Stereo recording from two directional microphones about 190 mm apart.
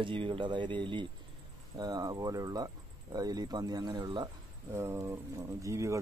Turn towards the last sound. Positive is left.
turn(degrees=-15)  # may be behind; listen again after turning